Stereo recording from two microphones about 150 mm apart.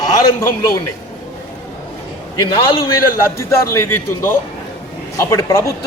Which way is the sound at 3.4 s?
20° left (ahead or behind).